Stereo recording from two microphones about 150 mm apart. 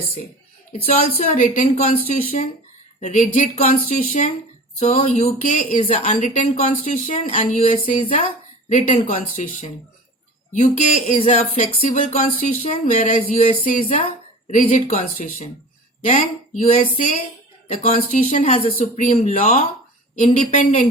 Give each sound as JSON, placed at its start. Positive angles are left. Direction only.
{"t": 0.9, "sound": "speech", "side_deg": 45}
{"t": 3.0, "sound": "speech", "side_deg": 55}
{"t": 8.9, "sound": "speech", "side_deg": 45}
{"t": 14.5, "sound": "speech", "side_deg": 60}